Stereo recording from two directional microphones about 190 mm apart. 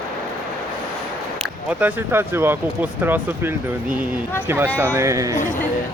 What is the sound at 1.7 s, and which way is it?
Speech, 10° right (ahead or behind).